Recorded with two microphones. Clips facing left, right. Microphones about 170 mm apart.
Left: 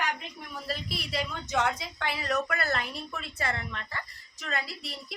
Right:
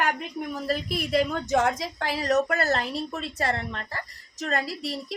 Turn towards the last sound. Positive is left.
turn(degrees=-40)  # may be behind; listen again after turning